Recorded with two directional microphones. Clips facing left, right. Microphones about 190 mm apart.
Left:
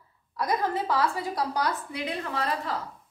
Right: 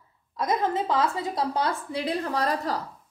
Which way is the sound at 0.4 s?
20° right (ahead or behind).